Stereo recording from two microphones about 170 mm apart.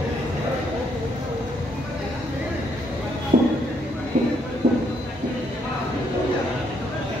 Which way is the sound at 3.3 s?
50° right (ahead or behind).